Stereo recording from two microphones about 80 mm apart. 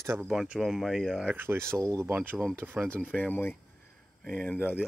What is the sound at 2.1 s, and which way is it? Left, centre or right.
Speech, right.